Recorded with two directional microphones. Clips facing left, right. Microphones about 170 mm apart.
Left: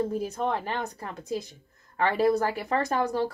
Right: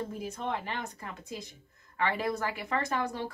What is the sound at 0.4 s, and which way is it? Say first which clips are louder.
Speech: left 3 dB; 40° left (ahead or behind).